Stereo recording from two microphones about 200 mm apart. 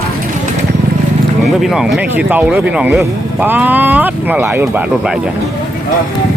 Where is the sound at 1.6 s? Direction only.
Centre (ahead or behind).